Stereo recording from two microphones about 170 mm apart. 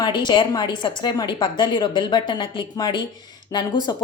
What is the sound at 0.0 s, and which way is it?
A woman's voice, 25° left (ahead or behind).